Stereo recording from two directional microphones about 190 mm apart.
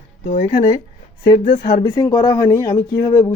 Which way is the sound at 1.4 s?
25° left (ahead or behind).